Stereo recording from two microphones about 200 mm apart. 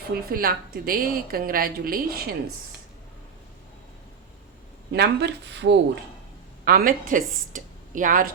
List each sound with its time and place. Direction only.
0.3 s a woman's voice: 45° right (ahead or behind)
4.9 s speech: 60° right (ahead or behind)
6.7 s a woman's voice: 50° right (ahead or behind)